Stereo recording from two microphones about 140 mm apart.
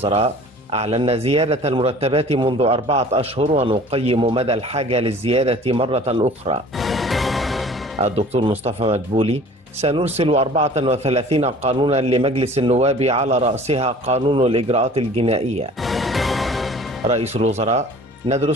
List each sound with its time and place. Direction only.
0.0 s speech: 45° right (ahead or behind)
6.8 s music: centre (ahead or behind)
8.0 s speech: 50° right (ahead or behind)
15.8 s music: centre (ahead or behind)
17.1 s speech: 50° right (ahead or behind)
18.3 s speech: 35° right (ahead or behind)